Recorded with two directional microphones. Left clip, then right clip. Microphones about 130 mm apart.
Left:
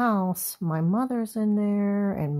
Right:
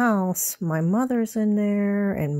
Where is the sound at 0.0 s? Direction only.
40° right (ahead or behind).